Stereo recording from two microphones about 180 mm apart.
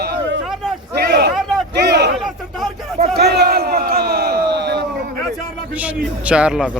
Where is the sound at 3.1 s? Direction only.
65° right (ahead or behind).